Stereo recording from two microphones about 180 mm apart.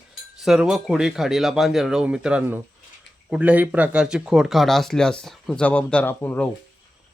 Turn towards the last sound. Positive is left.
turn(degrees=10)  # may be behind; listen again after turning